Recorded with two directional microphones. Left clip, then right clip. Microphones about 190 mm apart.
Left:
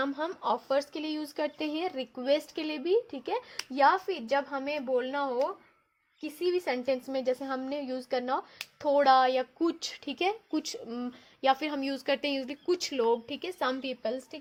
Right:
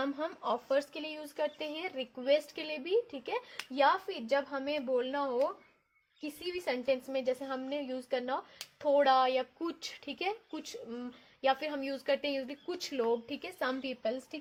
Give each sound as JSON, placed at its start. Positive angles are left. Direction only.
{"t": 0.0, "sound": "speech", "side_deg": 45}
{"t": 6.7, "sound": "speech", "side_deg": 50}